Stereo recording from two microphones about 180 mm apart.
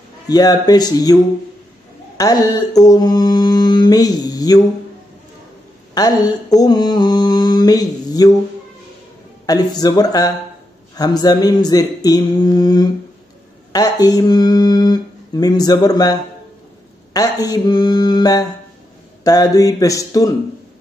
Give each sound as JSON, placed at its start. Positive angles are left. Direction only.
{"t": 0.3, "sound": "mantra", "side_deg": 20}
{"t": 5.9, "sound": "mantra", "side_deg": 20}
{"t": 9.5, "sound": "mantra", "side_deg": 20}
{"t": 13.7, "sound": "speech", "side_deg": 20}
{"t": 17.1, "sound": "mantra", "side_deg": 20}